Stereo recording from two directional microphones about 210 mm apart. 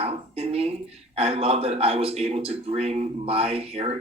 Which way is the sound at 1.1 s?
30° right (ahead or behind).